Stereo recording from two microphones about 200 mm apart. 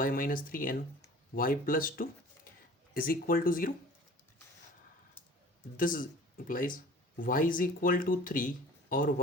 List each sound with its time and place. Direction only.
0.0 s speech: 45° left (ahead or behind)
5.7 s speech: 45° left (ahead or behind)